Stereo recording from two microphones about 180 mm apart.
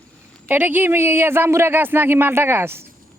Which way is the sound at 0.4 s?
10° right (ahead or behind).